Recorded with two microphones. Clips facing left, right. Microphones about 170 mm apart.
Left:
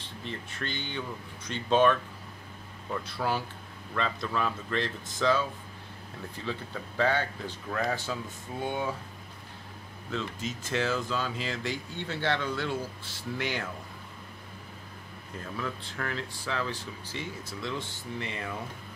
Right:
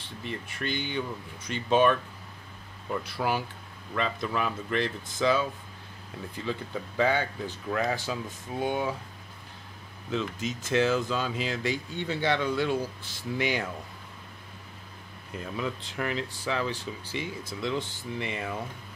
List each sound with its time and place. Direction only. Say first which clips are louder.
0.2 s speech: right 3 dB; 10° right (ahead or behind)
7.0 s speech: right 2 dB; 15° right (ahead or behind)
10.1 s speech: right 3 dB; 15° right (ahead or behind)
15.3 s speech: right 3 dB; 15° right (ahead or behind)